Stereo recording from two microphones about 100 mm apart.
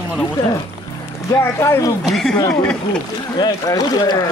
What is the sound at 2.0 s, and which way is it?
Speech, centre (ahead or behind).